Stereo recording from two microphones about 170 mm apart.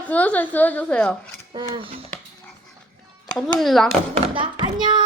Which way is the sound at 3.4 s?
Centre (ahead or behind).